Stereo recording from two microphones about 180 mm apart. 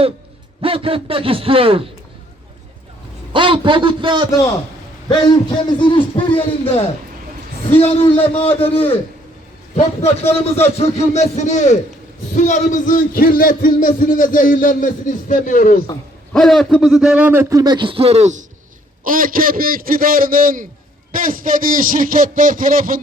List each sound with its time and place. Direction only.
0.6 s a man's voice: 30° right (ahead or behind)
3.3 s a man's voice: 25° right (ahead or behind)
5.0 s a man's voice: 25° left (ahead or behind); by 15.8 s 45° left (ahead or behind)
16.3 s a man's voice: centre (ahead or behind); by 18.3 s 35° right (ahead or behind)
19.0 s a man's voice: 50° right (ahead or behind)